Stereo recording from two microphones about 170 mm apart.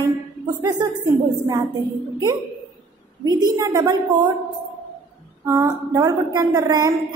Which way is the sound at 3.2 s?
25° right (ahead or behind).